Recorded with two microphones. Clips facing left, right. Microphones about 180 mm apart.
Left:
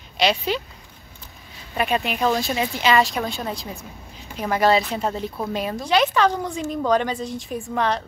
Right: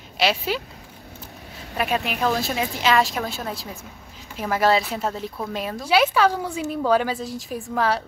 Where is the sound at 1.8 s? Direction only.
Centre (ahead or behind).